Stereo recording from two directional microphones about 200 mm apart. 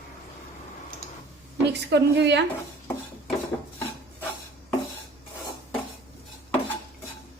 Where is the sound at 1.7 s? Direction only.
60° right (ahead or behind).